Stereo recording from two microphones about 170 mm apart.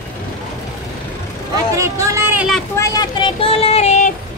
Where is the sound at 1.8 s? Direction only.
20° right (ahead or behind).